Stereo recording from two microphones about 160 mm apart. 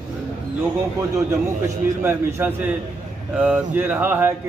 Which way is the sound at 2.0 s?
10° right (ahead or behind).